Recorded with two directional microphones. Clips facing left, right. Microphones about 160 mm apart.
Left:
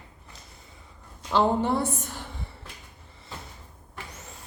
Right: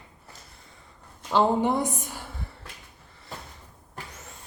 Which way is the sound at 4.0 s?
40° right (ahead or behind).